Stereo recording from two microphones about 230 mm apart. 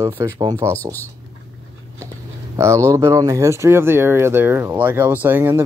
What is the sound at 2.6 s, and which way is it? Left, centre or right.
Speech, centre.